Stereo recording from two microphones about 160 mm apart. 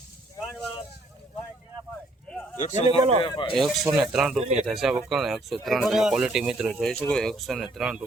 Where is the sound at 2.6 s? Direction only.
50° left (ahead or behind).